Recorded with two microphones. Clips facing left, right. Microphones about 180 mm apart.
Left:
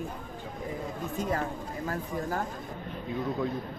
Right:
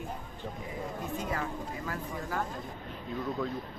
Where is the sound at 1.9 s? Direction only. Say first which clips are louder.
Left 5 dB; 40° left (ahead or behind).